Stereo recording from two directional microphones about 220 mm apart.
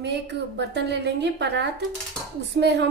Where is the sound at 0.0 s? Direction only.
50° right (ahead or behind).